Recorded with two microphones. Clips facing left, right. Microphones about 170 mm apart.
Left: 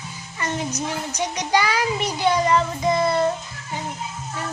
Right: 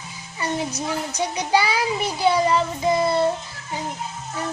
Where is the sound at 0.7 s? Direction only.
30° right (ahead or behind).